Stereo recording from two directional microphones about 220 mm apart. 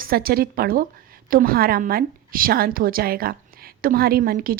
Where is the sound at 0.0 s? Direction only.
40° right (ahead or behind).